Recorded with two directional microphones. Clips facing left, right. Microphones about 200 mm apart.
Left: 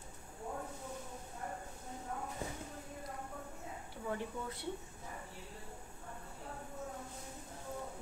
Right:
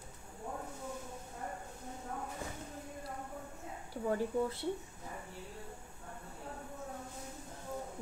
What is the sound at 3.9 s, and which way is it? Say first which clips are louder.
Speech: right 7 dB; 40° right (ahead or behind).